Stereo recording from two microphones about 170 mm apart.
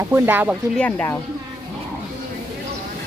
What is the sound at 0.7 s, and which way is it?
Speech, 10° left (ahead or behind).